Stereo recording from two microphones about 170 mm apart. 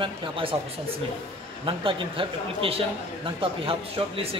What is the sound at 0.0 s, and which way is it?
Speech, 30° right (ahead or behind).